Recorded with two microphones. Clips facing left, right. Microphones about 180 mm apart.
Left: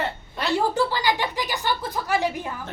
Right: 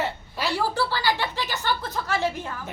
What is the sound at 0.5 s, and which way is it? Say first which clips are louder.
A woman's voice: left 4 dB; 20° left (ahead or behind).